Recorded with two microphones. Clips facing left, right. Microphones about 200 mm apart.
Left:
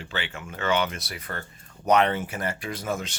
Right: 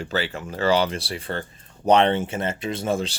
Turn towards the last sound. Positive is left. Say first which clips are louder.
# right 6 dB
turn(degrees=-30)  # may be behind; listen again after turning